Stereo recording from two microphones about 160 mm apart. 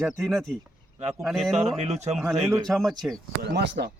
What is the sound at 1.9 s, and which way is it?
Speech, 45° right (ahead or behind).